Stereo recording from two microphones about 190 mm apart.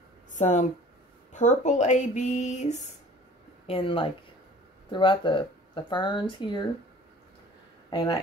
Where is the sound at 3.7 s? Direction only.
30° left (ahead or behind).